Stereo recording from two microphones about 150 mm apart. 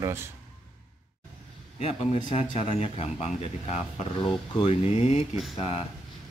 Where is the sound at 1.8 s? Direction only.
45° left (ahead or behind).